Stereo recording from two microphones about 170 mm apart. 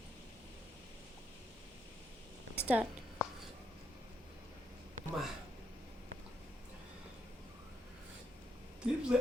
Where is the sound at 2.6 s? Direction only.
10° right (ahead or behind).